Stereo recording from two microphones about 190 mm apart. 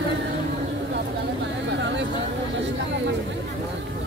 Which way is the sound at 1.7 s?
70° right (ahead or behind).